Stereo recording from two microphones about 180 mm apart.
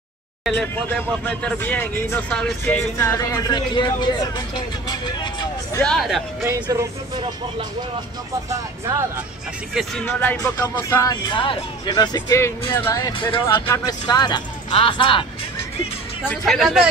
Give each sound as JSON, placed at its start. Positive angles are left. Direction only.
{"t": 0.8, "sound": "speech", "side_deg": 10}
{"t": 3.0, "sound": "speech", "side_deg": 20}
{"t": 5.8, "sound": "a man's voice", "side_deg": 5}
{"t": 6.4, "sound": "speech", "side_deg": -15}
{"t": 8.5, "sound": "speech", "side_deg": -15}
{"t": 10.0, "sound": "speech", "side_deg": 10}
{"t": 16.3, "sound": "a man's voice", "side_deg": 0}